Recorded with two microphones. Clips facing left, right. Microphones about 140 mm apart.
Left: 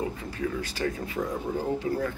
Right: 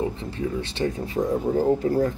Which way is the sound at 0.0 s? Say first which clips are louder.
Right 4 dB; 25° right (ahead or behind).